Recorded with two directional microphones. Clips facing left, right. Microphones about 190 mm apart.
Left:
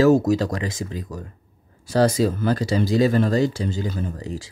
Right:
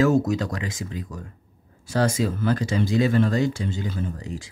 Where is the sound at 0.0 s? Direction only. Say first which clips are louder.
Left 4 dB; 35° left (ahead or behind).